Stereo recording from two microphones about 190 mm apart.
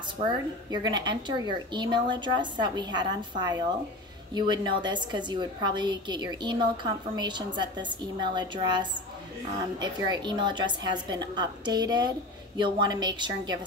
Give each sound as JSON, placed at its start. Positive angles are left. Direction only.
{"t": 0.2, "sound": "a woman's voice", "side_deg": -30}